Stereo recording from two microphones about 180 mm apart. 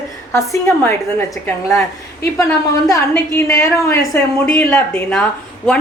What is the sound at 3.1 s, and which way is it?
A woman's voice, 15° left (ahead or behind).